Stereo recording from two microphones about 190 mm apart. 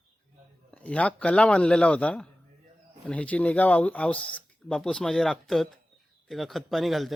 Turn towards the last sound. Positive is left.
turn(degrees=0)  # may be behind; listen again after turning